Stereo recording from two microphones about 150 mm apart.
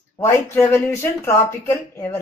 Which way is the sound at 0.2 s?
15° left (ahead or behind).